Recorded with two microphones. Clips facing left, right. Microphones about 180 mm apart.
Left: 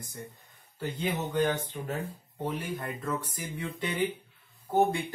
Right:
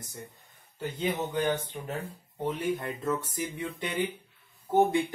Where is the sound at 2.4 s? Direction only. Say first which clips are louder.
Right 3 dB; 25° right (ahead or behind).